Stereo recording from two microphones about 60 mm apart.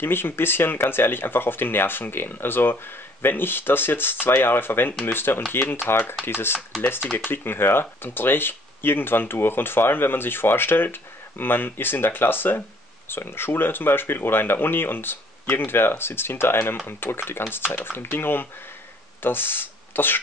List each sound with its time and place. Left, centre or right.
0.0 s speech: left